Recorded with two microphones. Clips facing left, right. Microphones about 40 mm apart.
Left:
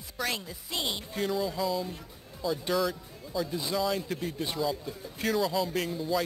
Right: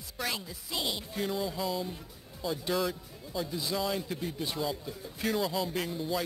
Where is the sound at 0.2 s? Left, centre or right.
Centre.